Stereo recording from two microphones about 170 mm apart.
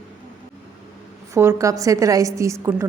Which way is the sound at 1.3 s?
15° right (ahead or behind).